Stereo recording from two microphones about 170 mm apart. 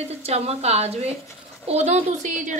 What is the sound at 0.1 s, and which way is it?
A woman's voice, 40° right (ahead or behind).